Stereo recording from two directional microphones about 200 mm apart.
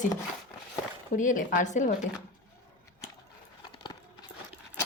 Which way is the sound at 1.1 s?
40° left (ahead or behind).